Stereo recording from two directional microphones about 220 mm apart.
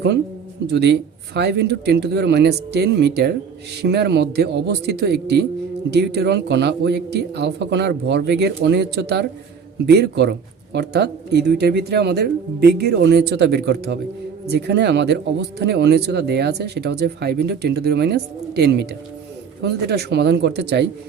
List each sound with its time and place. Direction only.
0.7 s speech: 50° right (ahead or behind)